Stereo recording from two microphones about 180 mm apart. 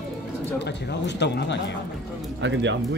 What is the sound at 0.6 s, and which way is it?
Speech, 70° left (ahead or behind).